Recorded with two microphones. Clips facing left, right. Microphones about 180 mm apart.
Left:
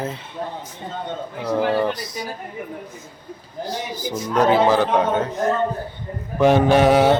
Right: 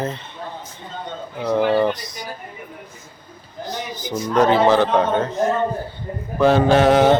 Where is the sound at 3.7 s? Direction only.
10° left (ahead or behind).